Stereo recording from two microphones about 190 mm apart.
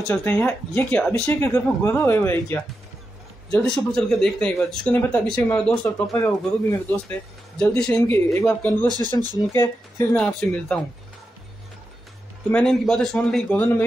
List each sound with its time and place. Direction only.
0.1 s speech: 10° left (ahead or behind)
8.8 s speech: 20° right (ahead or behind)
10.1 s speech: 5° left (ahead or behind)
12.4 s speech: 5° left (ahead or behind)